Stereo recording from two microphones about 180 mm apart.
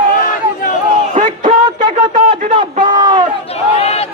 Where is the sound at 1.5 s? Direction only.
25° right (ahead or behind).